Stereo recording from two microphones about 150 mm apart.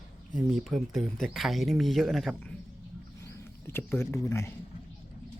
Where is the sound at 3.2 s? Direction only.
15° left (ahead or behind).